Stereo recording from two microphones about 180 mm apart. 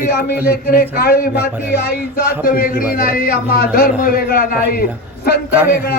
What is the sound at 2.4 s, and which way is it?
A man's voice, 50° left (ahead or behind).